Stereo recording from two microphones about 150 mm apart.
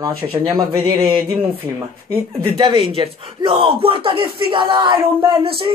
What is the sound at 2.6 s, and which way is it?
Speech, 35° right (ahead or behind).